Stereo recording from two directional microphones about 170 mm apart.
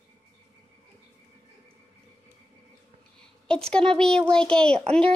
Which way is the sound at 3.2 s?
5° left (ahead or behind).